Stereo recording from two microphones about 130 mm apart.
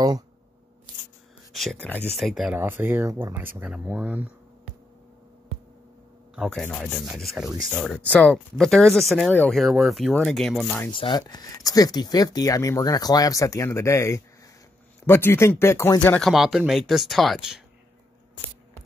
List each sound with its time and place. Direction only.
1.5 s speech: 5° left (ahead or behind)
2.5 s speech: 15° right (ahead or behind)
6.3 s speech: centre (ahead or behind)
8.1 s speech: 10° left (ahead or behind)
10.9 s speech: 40° left (ahead or behind); by 16.2 s 15° left (ahead or behind)
16.2 s speech: centre (ahead or behind)